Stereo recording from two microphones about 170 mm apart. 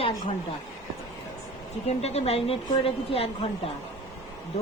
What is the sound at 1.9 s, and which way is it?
Speech, 40° left (ahead or behind).